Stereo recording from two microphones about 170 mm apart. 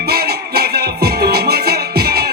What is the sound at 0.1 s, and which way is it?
Music, 70° right (ahead or behind).